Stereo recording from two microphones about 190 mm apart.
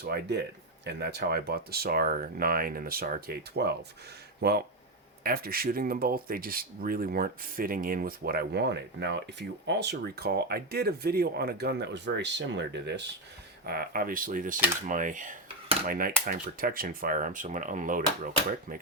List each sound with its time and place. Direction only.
0.0 s speech: 55° right (ahead or behind)
13.7 s speech: 50° right (ahead or behind)